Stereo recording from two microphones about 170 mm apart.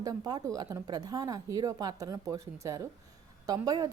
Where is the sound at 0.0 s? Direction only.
20° right (ahead or behind).